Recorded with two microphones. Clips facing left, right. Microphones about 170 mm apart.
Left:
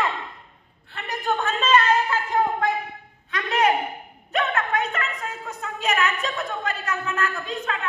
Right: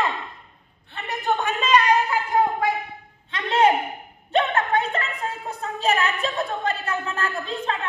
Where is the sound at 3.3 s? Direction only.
25° right (ahead or behind).